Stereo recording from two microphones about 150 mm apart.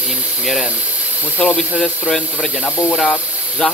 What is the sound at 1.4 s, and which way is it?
Speech, centre (ahead or behind).